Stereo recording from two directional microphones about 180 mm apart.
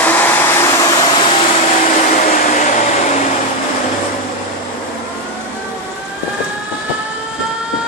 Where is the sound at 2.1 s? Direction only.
45° left (ahead or behind).